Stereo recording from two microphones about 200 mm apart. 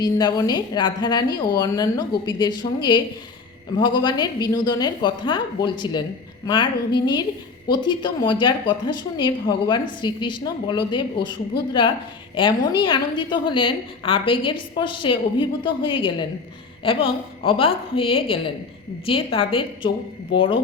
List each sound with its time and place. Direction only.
0.0 s a woman's voice: 20° left (ahead or behind)